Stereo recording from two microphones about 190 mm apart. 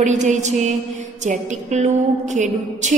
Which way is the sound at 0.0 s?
40° right (ahead or behind).